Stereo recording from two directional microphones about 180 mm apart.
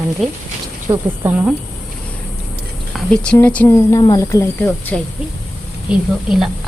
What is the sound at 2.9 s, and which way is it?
A woman's voice, 5° left (ahead or behind).